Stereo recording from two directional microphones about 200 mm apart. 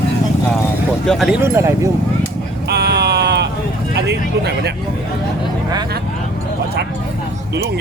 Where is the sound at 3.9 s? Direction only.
55° right (ahead or behind).